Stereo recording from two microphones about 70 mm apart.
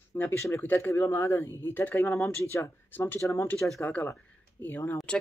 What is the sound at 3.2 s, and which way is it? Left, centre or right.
Speech, left.